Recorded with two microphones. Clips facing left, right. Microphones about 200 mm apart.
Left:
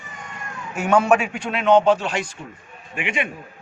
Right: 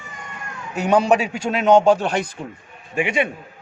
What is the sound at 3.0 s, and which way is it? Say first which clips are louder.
Speech: right 5 dB; 40° right (ahead or behind).